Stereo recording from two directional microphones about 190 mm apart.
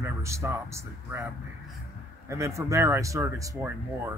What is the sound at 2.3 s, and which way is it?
Speech, 15° right (ahead or behind).